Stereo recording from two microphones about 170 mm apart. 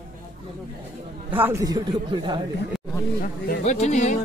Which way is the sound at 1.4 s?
20° right (ahead or behind).